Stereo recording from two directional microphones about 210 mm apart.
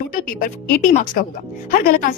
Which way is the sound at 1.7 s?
40° left (ahead or behind).